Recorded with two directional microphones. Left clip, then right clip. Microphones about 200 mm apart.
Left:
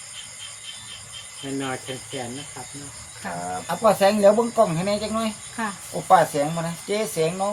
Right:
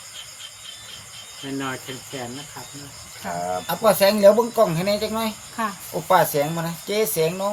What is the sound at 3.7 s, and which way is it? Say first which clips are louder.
Speech: even; 60° right (ahead or behind).